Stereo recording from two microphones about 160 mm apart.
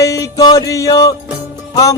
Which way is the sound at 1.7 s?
20° left (ahead or behind).